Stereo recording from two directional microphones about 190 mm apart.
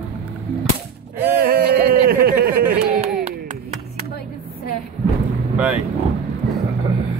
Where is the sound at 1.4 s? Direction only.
55° right (ahead or behind).